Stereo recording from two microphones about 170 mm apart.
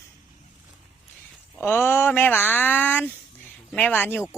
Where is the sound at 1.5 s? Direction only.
10° left (ahead or behind).